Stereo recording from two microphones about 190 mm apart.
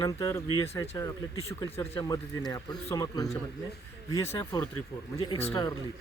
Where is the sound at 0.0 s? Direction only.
15° left (ahead or behind).